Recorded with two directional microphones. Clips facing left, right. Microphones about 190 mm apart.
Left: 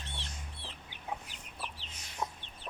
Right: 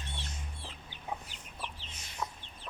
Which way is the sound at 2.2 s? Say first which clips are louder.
Left 1 dB; 25° left (ahead or behind).